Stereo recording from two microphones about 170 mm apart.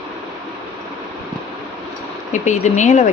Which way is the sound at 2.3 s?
45° left (ahead or behind).